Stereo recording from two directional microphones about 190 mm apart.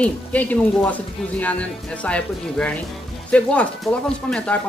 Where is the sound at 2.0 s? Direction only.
5° left (ahead or behind).